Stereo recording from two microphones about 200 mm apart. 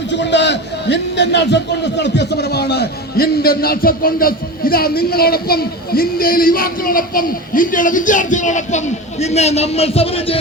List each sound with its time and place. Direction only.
0.1 s a man's voice: 60° left (ahead or behind); by 10.3 s 30° left (ahead or behind)